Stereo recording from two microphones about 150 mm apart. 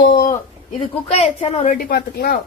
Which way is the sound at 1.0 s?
45° left (ahead or behind).